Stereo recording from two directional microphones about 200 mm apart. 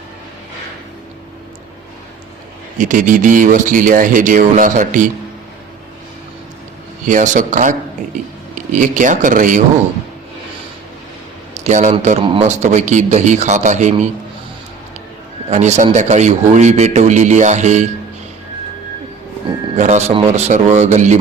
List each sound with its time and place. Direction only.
2.7 s a man's voice: 40° right (ahead or behind)
7.0 s a man's voice: 40° right (ahead or behind)
11.5 s a sound: 35° right (ahead or behind)
12.0 s a man's voice: 30° right (ahead or behind)
15.4 s a man's voice: 35° right (ahead or behind)
19.7 s a man's voice: 35° right (ahead or behind)